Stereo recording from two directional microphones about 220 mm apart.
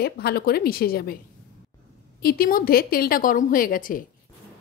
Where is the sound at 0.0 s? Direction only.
45° left (ahead or behind).